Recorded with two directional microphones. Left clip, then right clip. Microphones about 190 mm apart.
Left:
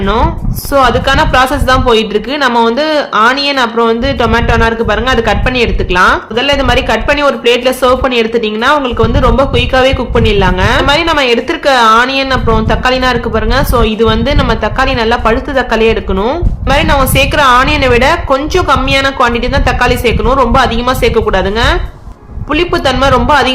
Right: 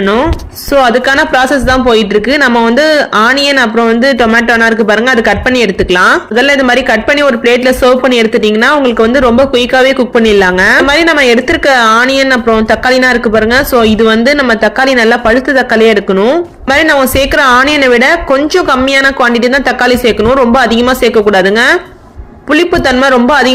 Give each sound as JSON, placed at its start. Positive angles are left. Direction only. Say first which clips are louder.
{"t": 0.7, "sound": "speech", "louder": "right 2 dB", "side_deg": -25}